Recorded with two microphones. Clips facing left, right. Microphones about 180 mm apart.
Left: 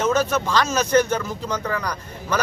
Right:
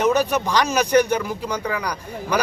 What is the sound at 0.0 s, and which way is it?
Speech, 15° right (ahead or behind).